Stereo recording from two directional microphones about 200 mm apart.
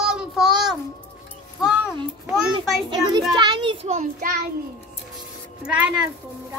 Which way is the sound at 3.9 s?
40° right (ahead or behind).